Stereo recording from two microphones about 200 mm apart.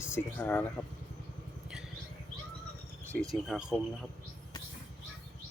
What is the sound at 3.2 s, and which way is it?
Speech, centre (ahead or behind).